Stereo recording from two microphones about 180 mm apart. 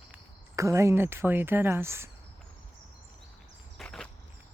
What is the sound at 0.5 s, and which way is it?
Speech, 15° right (ahead or behind).